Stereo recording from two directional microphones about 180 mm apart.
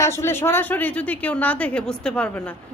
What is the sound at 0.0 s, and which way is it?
A man's voice, 15° left (ahead or behind).